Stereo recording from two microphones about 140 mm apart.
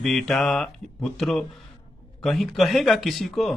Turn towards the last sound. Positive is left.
turn(degrees=0)  # may be behind; listen again after turning